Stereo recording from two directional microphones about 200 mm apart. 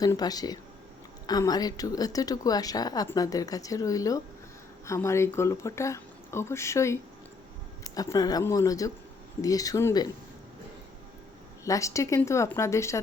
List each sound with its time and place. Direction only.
0.0 s a woman's voice: 20° left (ahead or behind)
11.6 s a woman's voice: 15° left (ahead or behind)